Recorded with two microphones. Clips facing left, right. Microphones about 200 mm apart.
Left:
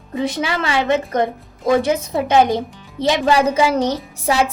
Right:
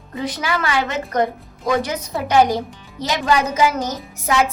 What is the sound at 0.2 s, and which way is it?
A woman's voice, 25° left (ahead or behind).